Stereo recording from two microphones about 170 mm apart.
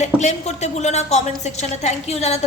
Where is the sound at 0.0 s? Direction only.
40° left (ahead or behind).